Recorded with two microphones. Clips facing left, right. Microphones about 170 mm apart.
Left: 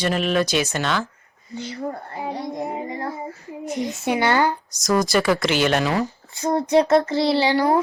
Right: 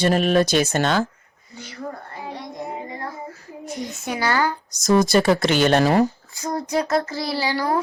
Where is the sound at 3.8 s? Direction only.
20° left (ahead or behind).